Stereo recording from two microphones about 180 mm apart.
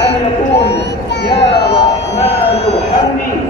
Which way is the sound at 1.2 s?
70° left (ahead or behind).